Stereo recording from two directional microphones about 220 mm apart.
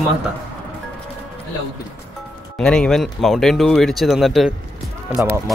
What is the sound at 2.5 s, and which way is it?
Speech, 5° left (ahead or behind).